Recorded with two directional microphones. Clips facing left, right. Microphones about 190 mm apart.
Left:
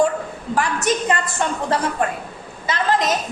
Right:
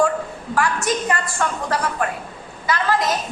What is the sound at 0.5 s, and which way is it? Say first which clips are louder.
A woman's voice: left 1 dB; 20° left (ahead or behind).